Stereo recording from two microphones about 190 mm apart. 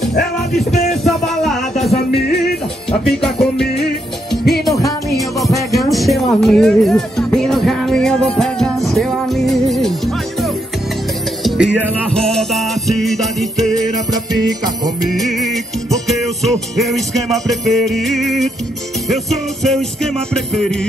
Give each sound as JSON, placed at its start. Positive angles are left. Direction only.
{"t": 1.0, "sound": "music", "side_deg": 0}
{"t": 2.9, "sound": "music", "side_deg": 0}
{"t": 4.7, "sound": "music", "side_deg": 20}
{"t": 5.8, "sound": "speech", "side_deg": 0}
{"t": 11.4, "sound": "music", "side_deg": -5}
{"t": 15.1, "sound": "music", "side_deg": 0}